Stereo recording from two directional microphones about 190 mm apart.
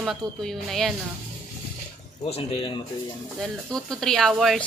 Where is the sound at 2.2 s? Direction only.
30° left (ahead or behind).